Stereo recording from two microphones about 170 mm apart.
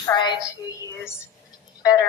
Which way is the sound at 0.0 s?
25° left (ahead or behind).